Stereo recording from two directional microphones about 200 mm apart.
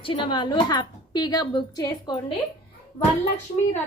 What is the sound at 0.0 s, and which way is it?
A woman's voice, 25° left (ahead or behind).